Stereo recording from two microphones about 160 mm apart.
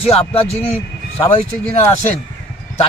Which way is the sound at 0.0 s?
40° left (ahead or behind).